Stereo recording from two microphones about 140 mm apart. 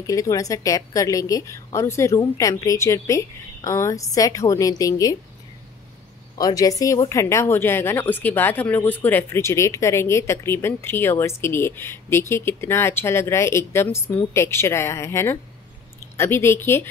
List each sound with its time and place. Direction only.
0.0 s a woman's voice: 25° left (ahead or behind)
6.3 s speech: 25° left (ahead or behind)